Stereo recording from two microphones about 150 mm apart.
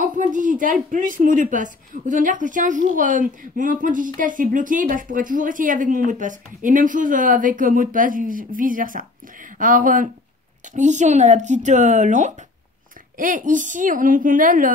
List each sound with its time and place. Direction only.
0.0 s a woman's voice: 60° right (ahead or behind)